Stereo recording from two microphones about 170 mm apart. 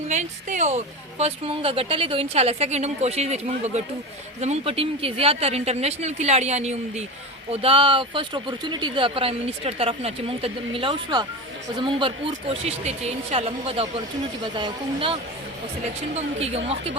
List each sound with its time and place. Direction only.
0.1 s speech: 45° right (ahead or behind)